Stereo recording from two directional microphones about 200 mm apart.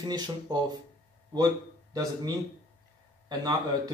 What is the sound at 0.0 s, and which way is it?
Speech, 20° right (ahead or behind).